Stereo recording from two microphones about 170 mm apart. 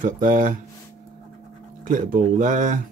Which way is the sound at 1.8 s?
50° right (ahead or behind).